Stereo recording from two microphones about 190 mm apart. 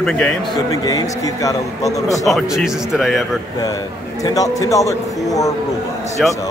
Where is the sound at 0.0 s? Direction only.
5° left (ahead or behind).